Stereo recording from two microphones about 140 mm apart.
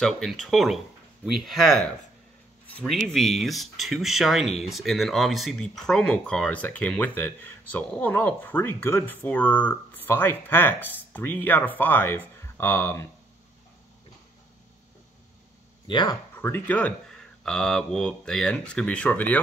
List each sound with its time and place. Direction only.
0.0 s speech: centre (ahead or behind)
2.8 s speech: centre (ahead or behind)
15.9 s speech: 35° left (ahead or behind)
16.3 s speech: 15° left (ahead or behind)